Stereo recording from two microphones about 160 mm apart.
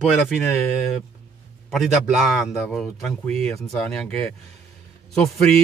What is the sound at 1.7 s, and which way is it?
Speech, centre (ahead or behind).